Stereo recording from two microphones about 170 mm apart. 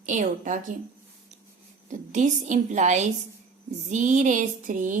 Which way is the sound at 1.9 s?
45° right (ahead or behind).